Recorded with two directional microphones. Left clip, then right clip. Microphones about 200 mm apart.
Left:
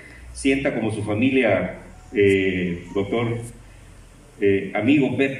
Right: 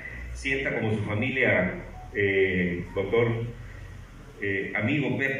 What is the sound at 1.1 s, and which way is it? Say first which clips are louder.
Speech: left 8 dB; 55° left (ahead or behind).